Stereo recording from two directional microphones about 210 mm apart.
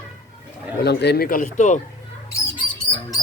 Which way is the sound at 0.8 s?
50° left (ahead or behind).